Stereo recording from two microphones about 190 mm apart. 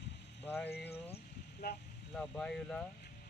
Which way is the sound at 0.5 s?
10° left (ahead or behind).